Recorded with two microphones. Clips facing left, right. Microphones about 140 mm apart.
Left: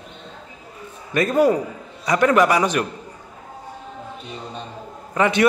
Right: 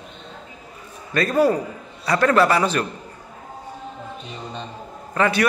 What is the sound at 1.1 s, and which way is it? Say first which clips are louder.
A man's voice: left 1 dB; 20° left (ahead or behind).